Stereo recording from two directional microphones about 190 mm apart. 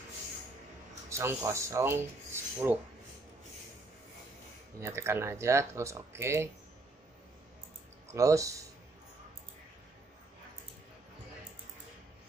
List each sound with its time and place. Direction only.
1.1 s speech: 15° right (ahead or behind)
4.7 s speech: 15° right (ahead or behind)
8.1 s speech: 15° right (ahead or behind)